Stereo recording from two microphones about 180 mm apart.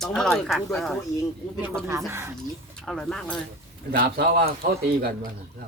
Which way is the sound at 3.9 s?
60° right (ahead or behind).